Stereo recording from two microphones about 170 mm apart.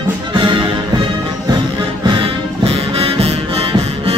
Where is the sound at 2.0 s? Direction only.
30° right (ahead or behind).